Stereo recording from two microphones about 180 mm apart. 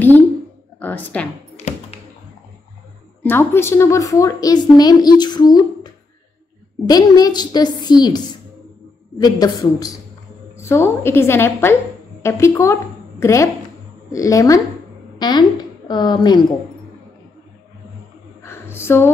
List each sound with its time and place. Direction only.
0.7 s speech: 10° left (ahead or behind)
1.6 s tap: 35° left (ahead or behind)
3.2 s a woman's voice: 10° left (ahead or behind)
6.9 s a woman's voice: 20° left (ahead or behind)
9.2 s a woman's voice: 20° left (ahead or behind)
18.4 s a sound: 15° left (ahead or behind)